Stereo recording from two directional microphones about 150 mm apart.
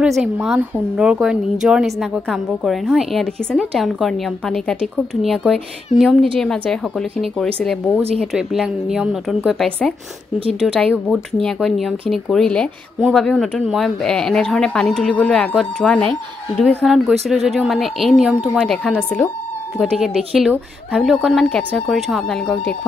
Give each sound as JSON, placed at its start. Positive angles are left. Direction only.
{"t": 0.0, "sound": "speech", "side_deg": -5}
{"t": 5.9, "sound": "a woman's voice", "side_deg": 55}
{"t": 6.4, "sound": "speech", "side_deg": 5}
{"t": 19.8, "sound": "speech", "side_deg": -5}